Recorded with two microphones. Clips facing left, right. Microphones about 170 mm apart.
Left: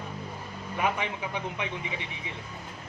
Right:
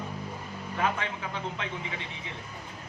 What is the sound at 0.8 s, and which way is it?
A man's voice, 15° left (ahead or behind).